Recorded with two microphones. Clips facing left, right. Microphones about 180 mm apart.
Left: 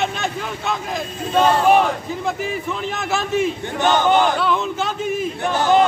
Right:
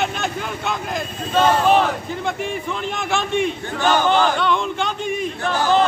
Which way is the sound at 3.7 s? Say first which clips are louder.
Left 1 dB; 20° left (ahead or behind).